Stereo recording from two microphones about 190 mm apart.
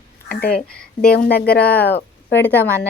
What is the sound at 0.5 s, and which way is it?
Speech, 5° left (ahead or behind).